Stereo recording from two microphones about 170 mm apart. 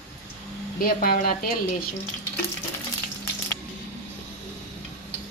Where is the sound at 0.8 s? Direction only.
60° left (ahead or behind).